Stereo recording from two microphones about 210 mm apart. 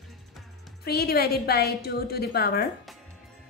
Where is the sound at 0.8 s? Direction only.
45° left (ahead or behind).